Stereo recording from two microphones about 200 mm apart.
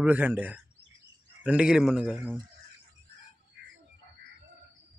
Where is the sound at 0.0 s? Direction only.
10° right (ahead or behind).